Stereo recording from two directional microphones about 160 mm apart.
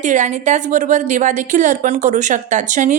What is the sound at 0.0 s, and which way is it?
A woman's voice, 50° right (ahead or behind).